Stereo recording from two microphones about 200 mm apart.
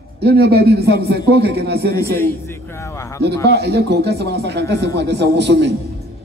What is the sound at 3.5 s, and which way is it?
Speech, 55° right (ahead or behind).